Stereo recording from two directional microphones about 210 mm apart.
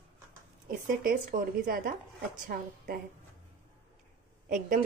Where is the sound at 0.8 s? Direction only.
40° right (ahead or behind).